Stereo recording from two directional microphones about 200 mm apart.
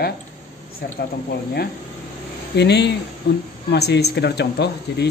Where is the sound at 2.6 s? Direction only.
55° left (ahead or behind).